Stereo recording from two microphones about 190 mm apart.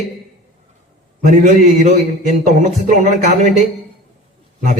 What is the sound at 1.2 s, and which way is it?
A man's voice, 40° right (ahead or behind).